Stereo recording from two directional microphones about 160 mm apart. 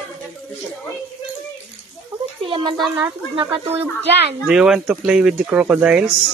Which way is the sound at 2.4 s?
30° right (ahead or behind).